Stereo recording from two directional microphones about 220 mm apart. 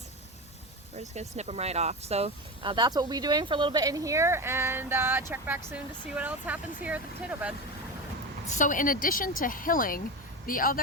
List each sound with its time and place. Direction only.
0.9 s speech: 30° right (ahead or behind); by 7.5 s 5° right (ahead or behind)
8.4 s a woman's voice: 35° left (ahead or behind)